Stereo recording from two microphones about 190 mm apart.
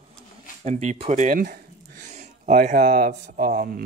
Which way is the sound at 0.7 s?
35° right (ahead or behind).